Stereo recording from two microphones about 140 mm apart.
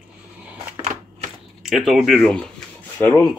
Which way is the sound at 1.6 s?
Centre (ahead or behind).